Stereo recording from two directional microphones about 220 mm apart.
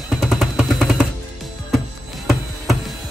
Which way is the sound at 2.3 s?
Centre (ahead or behind).